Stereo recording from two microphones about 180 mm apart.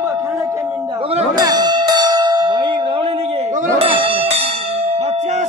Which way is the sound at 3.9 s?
30° right (ahead or behind).